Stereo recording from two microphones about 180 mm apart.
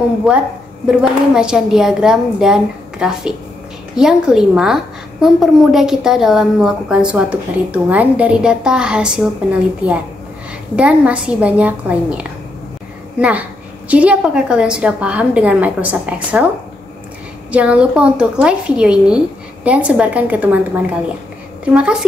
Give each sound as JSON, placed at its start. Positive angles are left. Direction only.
{"t": 0.3, "sound": "a woman's voice", "side_deg": 0}
{"t": 17.5, "sound": "a woman's voice", "side_deg": -5}
{"t": 21.6, "sound": "a woman's voice", "side_deg": -5}